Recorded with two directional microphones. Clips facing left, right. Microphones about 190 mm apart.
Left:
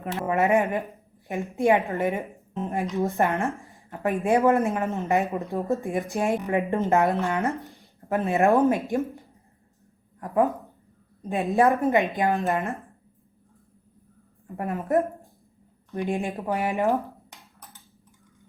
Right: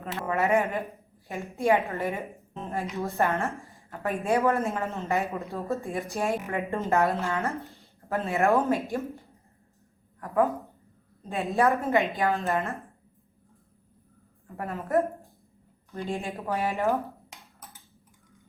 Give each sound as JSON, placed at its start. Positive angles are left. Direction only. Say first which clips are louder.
{"t": 0.3, "sound": "speech", "louder": "left 3 dB", "side_deg": 15}
{"t": 10.2, "sound": "a woman's voice", "louder": "left 2 dB", "side_deg": 20}
{"t": 14.5, "sound": "speech", "louder": "left 2 dB", "side_deg": 15}